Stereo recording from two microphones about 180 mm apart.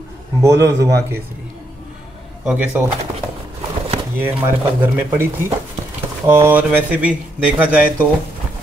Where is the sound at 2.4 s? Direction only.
5° right (ahead or behind).